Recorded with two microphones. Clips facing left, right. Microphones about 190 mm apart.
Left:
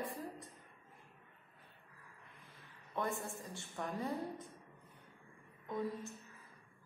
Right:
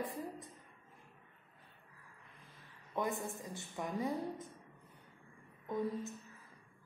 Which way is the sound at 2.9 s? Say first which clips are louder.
Right 2 dB; 20° right (ahead or behind).